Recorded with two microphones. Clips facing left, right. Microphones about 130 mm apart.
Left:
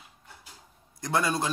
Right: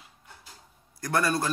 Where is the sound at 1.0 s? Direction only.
20° left (ahead or behind).